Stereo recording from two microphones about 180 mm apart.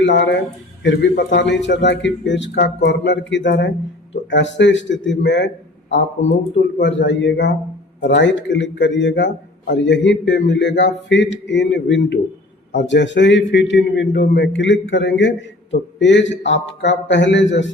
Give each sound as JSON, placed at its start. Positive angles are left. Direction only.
{"t": 0.0, "sound": "a man's voice", "side_deg": 80}
{"t": 6.7, "sound": "a man's voice", "side_deg": 80}